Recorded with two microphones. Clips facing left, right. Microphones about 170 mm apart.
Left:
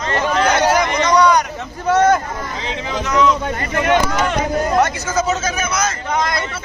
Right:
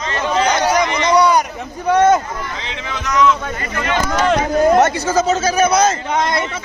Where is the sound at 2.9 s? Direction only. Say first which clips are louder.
Even; 30° left (ahead or behind).